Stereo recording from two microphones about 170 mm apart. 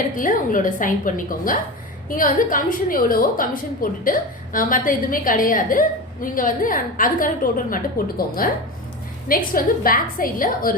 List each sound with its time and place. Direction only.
0.2 s a woman's voice: 50° left (ahead or behind)